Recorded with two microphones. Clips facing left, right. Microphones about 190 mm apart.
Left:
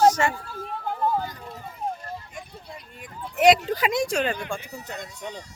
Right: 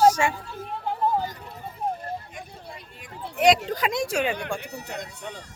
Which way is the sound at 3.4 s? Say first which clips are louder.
Left 2 dB; 5° left (ahead or behind).